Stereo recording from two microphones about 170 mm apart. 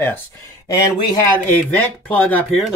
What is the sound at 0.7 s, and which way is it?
Speech, 20° left (ahead or behind).